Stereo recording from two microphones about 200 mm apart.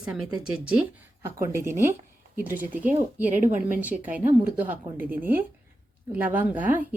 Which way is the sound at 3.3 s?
40° right (ahead or behind).